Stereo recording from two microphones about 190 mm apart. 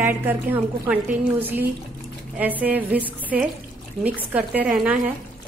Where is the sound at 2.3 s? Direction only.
10° right (ahead or behind).